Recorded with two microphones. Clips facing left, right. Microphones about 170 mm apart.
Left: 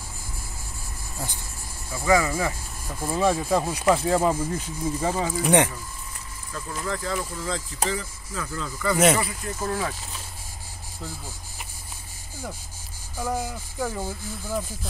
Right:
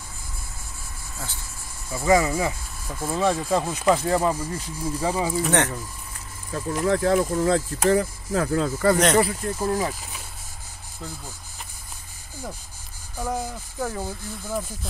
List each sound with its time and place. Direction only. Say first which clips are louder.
1.1 s speech: left 3 dB; 15° left (ahead or behind)
1.9 s speech: right 2 dB; 25° right (ahead or behind)
2.9 s speech: even; 5° left (ahead or behind)
5.0 s speech: right 3 dB; 10° right (ahead or behind)
5.4 s speech: left 5 dB; 10° left (ahead or behind)
6.5 s speech: right 8 dB; 55° right (ahead or behind)
8.9 s speech: left 2 dB; 5° left (ahead or behind)
9.7 s speech: right 2 dB; 15° right (ahead or behind)
13.2 s speech: even; centre (ahead or behind)